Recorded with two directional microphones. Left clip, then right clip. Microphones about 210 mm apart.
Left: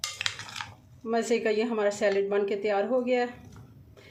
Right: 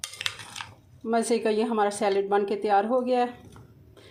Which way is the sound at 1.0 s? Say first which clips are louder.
Right 2 dB; 25° right (ahead or behind).